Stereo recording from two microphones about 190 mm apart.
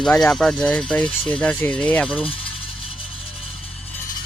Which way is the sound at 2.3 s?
30° left (ahead or behind).